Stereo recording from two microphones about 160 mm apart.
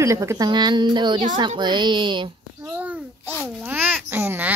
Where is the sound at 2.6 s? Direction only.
10° right (ahead or behind).